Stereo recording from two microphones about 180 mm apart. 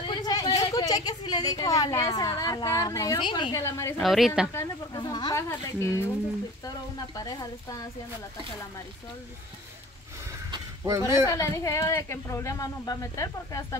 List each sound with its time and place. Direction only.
0.0 s a woman's voice: 25° left (ahead or behind)
4.0 s speech: centre (ahead or behind)
4.6 s speech: 20° left (ahead or behind)
7.2 s speech: 20° left (ahead or behind)
10.9 s speech: 15° right (ahead or behind)
11.2 s speech: 20° left (ahead or behind)